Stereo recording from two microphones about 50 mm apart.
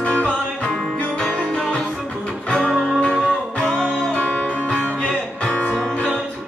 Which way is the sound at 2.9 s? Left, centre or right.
Left.